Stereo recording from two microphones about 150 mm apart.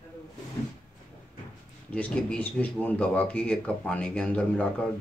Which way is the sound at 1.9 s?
5° left (ahead or behind).